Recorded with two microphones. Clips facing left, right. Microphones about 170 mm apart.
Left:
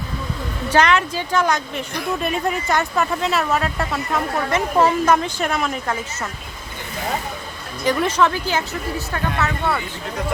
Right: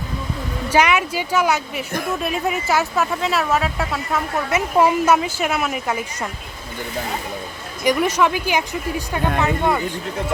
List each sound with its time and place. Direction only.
0.7 s speech: 10° right (ahead or behind)
7.9 s speech: 10° right (ahead or behind)